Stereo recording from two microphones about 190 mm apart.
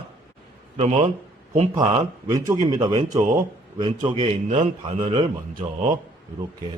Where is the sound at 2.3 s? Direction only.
20° right (ahead or behind).